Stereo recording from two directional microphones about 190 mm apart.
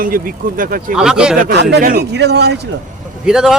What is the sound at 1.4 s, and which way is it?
Speech, 50° right (ahead or behind).